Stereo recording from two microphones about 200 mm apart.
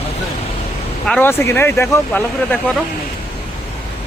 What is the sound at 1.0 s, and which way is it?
Speech, 5° left (ahead or behind).